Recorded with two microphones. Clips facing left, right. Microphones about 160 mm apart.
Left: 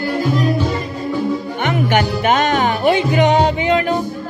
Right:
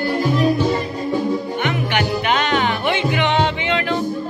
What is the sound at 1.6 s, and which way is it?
Music, 45° left (ahead or behind).